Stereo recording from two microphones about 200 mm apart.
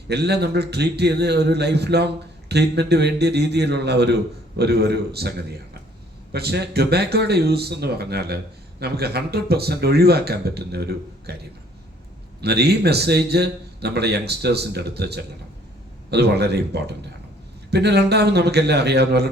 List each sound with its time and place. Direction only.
0.1 s a man's voice: 55° right (ahead or behind)